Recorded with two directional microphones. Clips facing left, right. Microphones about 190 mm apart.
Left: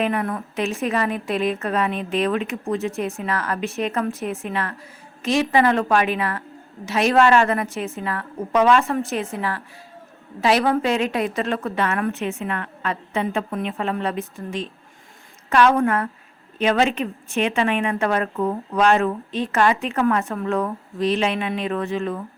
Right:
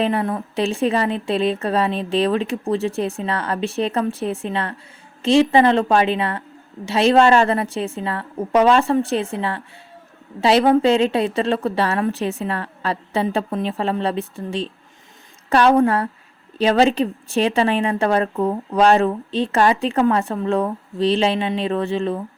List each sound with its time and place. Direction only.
0.0 s a woman's voice: 30° right (ahead or behind)